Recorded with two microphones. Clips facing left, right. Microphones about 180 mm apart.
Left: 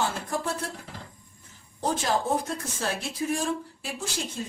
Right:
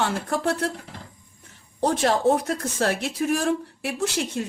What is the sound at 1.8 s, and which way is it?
A woman's voice, 70° right (ahead or behind).